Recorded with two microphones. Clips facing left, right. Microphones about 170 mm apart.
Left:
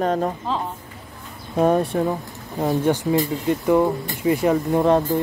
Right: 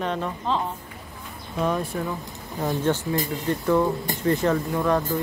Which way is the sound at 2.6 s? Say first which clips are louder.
Left 4 dB; 10° left (ahead or behind).